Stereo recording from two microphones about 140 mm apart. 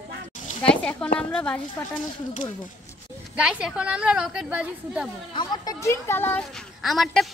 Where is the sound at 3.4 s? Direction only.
5° right (ahead or behind).